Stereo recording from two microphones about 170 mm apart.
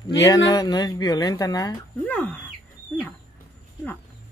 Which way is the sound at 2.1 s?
10° left (ahead or behind).